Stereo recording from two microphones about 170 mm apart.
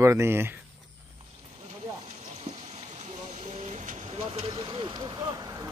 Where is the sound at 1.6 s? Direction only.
35° right (ahead or behind).